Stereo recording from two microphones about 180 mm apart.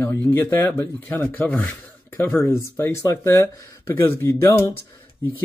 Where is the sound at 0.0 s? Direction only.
10° left (ahead or behind).